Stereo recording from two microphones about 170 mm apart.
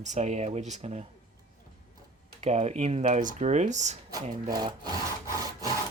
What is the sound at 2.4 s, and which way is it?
Speech, 40° right (ahead or behind).